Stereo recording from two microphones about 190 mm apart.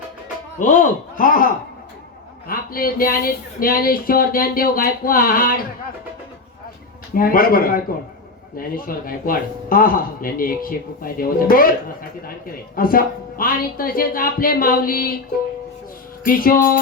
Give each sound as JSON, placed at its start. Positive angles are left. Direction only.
{"t": 0.6, "sound": "speech", "side_deg": 45}
{"t": 2.5, "sound": "speech", "side_deg": 50}
{"t": 7.1, "sound": "speech", "side_deg": 50}
{"t": 12.7, "sound": "speech", "side_deg": 50}
{"t": 16.2, "sound": "speech", "side_deg": 50}